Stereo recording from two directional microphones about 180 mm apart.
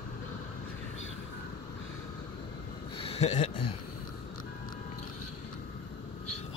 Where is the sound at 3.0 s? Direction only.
35° left (ahead or behind).